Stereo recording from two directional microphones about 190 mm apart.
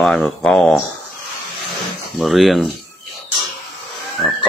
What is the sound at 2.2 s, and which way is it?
Speech, centre (ahead or behind).